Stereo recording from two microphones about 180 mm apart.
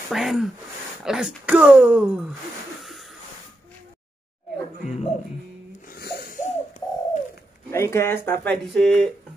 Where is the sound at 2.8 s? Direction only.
Centre (ahead or behind).